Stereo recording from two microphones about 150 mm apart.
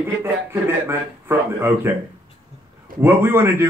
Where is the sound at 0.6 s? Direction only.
15° right (ahead or behind).